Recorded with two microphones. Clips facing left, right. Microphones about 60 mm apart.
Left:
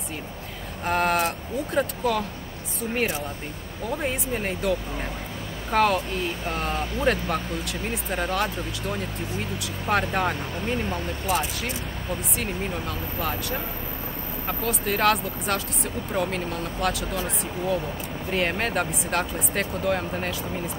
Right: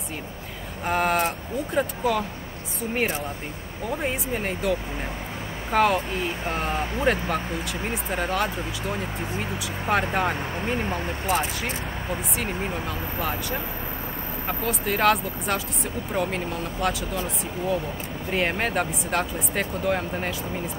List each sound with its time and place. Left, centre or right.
0.8 s speech: centre
3.9 s speech: centre
10.9 s speech: right
12.4 s speech: centre
18.3 s speech: centre